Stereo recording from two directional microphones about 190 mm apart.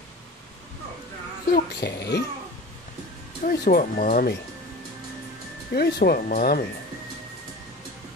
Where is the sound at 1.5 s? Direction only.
60° left (ahead or behind).